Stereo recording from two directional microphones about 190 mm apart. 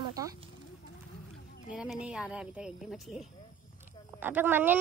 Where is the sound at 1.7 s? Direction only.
5° right (ahead or behind).